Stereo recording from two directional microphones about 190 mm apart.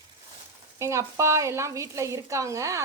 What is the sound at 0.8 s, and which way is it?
A woman's voice, 15° right (ahead or behind).